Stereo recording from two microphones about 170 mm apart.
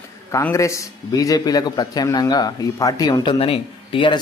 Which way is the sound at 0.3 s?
15° left (ahead or behind).